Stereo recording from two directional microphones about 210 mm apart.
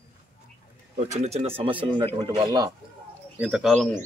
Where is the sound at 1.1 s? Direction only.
30° right (ahead or behind).